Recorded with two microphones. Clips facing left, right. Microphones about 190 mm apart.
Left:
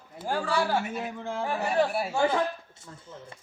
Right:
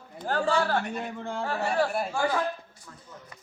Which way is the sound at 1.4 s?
15° left (ahead or behind).